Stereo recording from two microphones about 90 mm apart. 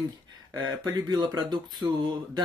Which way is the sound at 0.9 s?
50° right (ahead or behind).